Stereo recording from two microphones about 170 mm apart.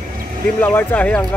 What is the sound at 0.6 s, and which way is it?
Speech, 10° left (ahead or behind).